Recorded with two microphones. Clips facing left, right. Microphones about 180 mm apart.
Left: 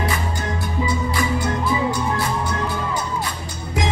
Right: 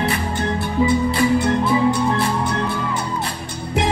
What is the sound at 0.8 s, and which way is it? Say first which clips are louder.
Music: right 7 dB; 25° right (ahead or behind).